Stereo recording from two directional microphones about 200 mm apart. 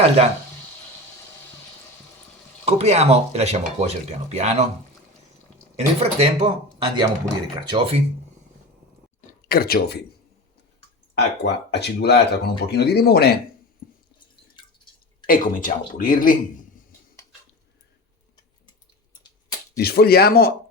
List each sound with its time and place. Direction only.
2.6 s speech: 30° right (ahead or behind)
5.7 s speech: 30° right (ahead or behind)
9.5 s speech: 50° left (ahead or behind)
11.1 s speech: 60° left (ahead or behind)
13.8 s drip: 45° left (ahead or behind)
15.3 s speech: 40° left (ahead or behind)
19.7 s speech: 50° left (ahead or behind)